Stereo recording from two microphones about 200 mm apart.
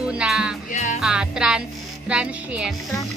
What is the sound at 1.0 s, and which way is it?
Speech, 5° right (ahead or behind).